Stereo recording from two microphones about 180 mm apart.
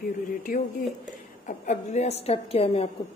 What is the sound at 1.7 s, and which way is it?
A woman's voice, 40° left (ahead or behind).